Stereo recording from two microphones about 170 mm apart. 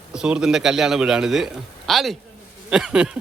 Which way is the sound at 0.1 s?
5° right (ahead or behind).